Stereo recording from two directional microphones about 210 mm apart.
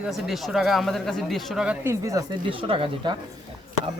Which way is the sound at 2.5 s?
25° right (ahead or behind).